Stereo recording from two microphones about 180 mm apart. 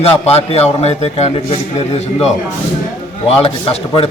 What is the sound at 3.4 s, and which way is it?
Speech, 35° left (ahead or behind).